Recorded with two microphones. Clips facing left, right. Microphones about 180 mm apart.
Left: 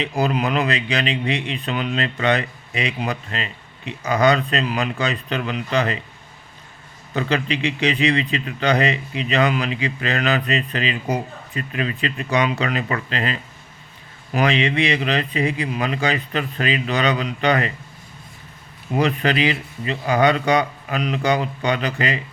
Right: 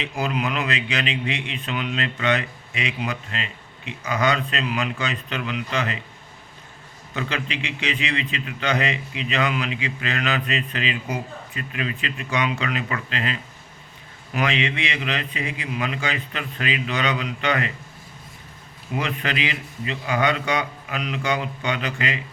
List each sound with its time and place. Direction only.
0.0 s a man's voice: 35° left (ahead or behind)
7.1 s a man's voice: 35° left (ahead or behind)
18.9 s a man's voice: 35° left (ahead or behind)